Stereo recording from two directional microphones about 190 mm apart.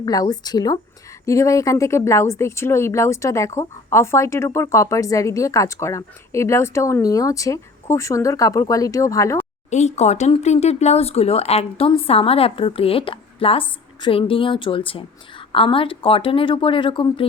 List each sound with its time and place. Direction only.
0.0 s speech: 20° left (ahead or behind)
9.6 s speech: 35° left (ahead or behind)